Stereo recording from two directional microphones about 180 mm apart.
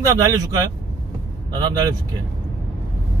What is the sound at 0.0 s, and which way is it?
Speech, 20° right (ahead or behind).